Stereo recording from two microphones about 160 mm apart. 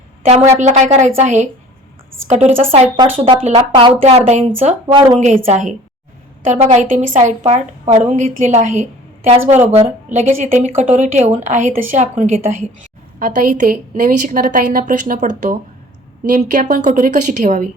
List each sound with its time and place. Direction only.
0.6 s a woman's voice: 45° right (ahead or behind)
4.3 s a woman's voice: 45° right (ahead or behind)
4.9 s speech: 25° right (ahead or behind)
5.2 s a woman's voice: 50° right (ahead or behind)
13.1 s a woman's voice: 60° right (ahead or behind)